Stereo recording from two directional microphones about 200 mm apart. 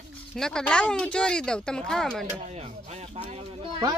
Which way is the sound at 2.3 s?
35° right (ahead or behind).